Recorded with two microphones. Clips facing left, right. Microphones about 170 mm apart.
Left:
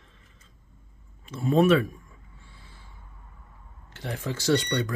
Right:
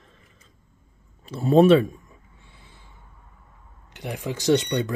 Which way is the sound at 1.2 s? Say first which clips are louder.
Right 5 dB; 35° right (ahead or behind).